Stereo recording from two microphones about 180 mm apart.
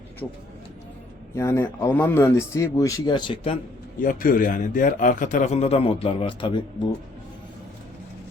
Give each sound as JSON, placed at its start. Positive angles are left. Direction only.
{"t": 0.2, "sound": "speech", "side_deg": 10}
{"t": 1.4, "sound": "speech", "side_deg": 15}
{"t": 4.0, "sound": "a man's voice", "side_deg": 50}